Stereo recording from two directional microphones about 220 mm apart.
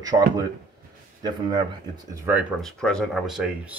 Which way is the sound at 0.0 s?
15° right (ahead or behind).